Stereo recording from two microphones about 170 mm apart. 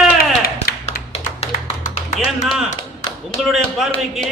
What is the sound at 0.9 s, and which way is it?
Tap, 40° left (ahead or behind).